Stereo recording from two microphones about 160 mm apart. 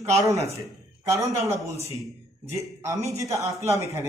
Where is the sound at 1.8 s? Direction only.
20° right (ahead or behind).